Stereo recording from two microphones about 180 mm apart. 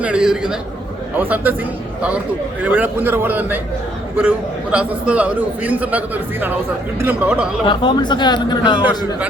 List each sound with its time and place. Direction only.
0.0 s a man's voice: 5° right (ahead or behind)
2.6 s a man's voice: 10° right (ahead or behind)
7.0 s a man's voice: 10° right (ahead or behind)
7.6 s speech: 25° left (ahead or behind)